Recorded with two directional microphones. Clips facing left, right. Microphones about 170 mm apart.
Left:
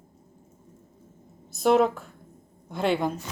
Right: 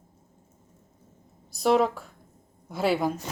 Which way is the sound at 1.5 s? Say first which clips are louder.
Left 2 dB; centre (ahead or behind).